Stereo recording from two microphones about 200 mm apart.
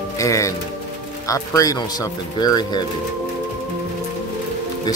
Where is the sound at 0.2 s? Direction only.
15° left (ahead or behind).